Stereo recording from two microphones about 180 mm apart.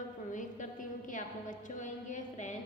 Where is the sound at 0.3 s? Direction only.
45° left (ahead or behind).